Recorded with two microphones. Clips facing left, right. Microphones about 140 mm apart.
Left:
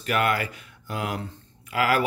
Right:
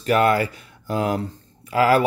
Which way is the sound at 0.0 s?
30° right (ahead or behind).